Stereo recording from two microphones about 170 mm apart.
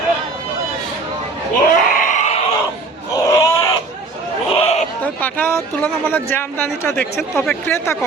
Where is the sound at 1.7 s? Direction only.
50° left (ahead or behind).